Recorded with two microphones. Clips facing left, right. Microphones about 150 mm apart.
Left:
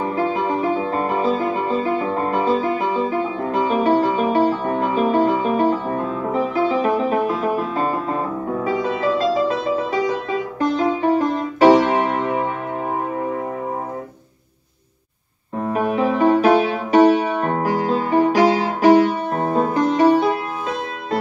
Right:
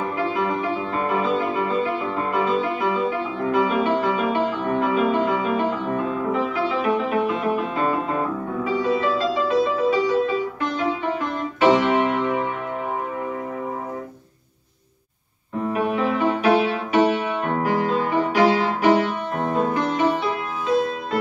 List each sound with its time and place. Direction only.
0.0 s music: 40° left (ahead or behind)
15.6 s music: 40° left (ahead or behind)